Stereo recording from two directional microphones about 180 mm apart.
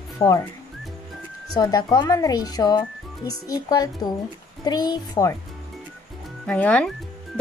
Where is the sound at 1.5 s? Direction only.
20° left (ahead or behind).